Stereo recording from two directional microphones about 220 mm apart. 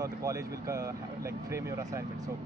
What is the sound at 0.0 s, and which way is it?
Speech, 15° right (ahead or behind).